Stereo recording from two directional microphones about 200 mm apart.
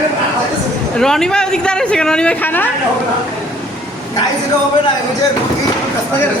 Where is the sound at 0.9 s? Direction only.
Centre (ahead or behind).